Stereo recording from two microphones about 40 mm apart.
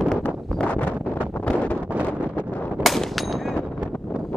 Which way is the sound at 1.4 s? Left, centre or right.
Left.